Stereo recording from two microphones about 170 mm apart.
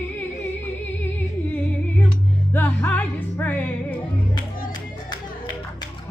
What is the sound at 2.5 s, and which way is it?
Music, 10° left (ahead or behind).